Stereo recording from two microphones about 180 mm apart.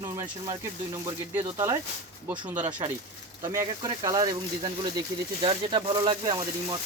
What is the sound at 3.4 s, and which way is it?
Speech, 20° right (ahead or behind).